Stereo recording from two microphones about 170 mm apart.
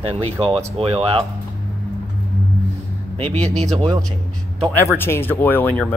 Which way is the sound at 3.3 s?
40° right (ahead or behind).